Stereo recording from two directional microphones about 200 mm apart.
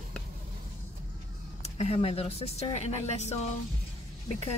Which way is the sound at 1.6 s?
30° left (ahead or behind).